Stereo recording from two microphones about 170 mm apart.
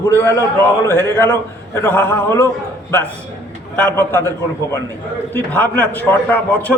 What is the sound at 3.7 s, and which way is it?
Speech, 10° left (ahead or behind).